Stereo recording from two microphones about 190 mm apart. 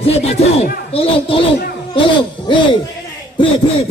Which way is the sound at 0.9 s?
30° left (ahead or behind).